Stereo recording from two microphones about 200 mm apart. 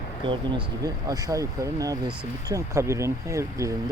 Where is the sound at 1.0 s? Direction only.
15° right (ahead or behind).